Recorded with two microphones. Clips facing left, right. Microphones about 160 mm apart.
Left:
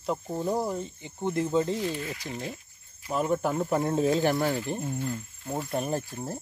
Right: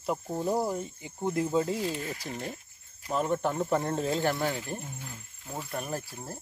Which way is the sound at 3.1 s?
5° left (ahead or behind).